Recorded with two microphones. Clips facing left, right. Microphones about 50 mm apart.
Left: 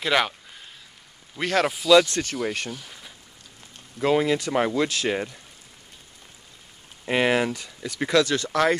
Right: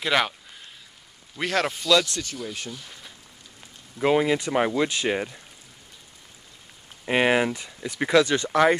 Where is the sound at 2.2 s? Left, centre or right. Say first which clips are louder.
Left 6 dB; left.